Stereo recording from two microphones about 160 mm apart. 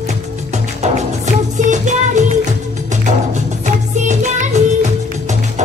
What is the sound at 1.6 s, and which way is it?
Music, 50° right (ahead or behind).